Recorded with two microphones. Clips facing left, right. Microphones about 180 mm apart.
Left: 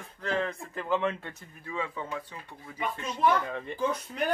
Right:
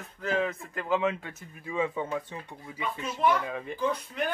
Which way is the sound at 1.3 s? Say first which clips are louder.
Right 4 dB; 20° right (ahead or behind).